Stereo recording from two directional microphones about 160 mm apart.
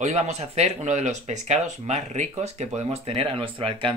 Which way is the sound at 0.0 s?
45° right (ahead or behind).